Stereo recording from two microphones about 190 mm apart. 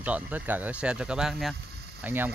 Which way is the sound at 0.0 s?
10° right (ahead or behind).